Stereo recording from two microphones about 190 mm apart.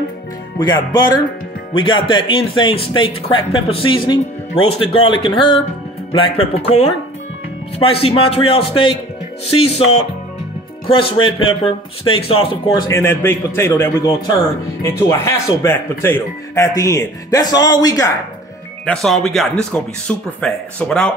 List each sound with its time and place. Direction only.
0.6 s speech: 20° left (ahead or behind)
18.9 s speech: centre (ahead or behind)